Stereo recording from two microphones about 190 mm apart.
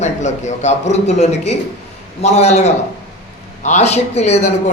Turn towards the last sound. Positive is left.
turn(degrees=35)  # may be behind; listen again after turning